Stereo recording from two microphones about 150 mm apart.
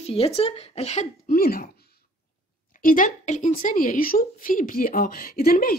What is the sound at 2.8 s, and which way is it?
Speech, 65° left (ahead or behind).